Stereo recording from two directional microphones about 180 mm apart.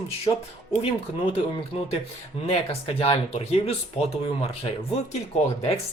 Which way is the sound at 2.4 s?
35° left (ahead or behind).